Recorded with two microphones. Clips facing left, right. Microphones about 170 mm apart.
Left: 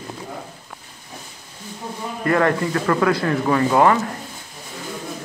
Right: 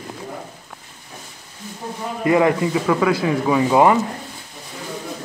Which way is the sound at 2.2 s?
10° right (ahead or behind).